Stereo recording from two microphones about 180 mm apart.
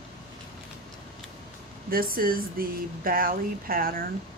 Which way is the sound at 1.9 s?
55° right (ahead or behind).